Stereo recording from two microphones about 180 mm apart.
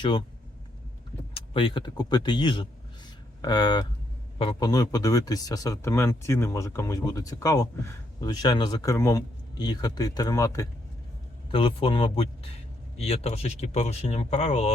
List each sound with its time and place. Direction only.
0.0 s speech: 25° left (ahead or behind)
1.3 s speech: 30° left (ahead or behind)
11.5 s speech: 30° left (ahead or behind)